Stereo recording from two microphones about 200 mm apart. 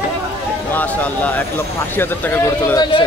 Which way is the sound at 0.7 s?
10° left (ahead or behind).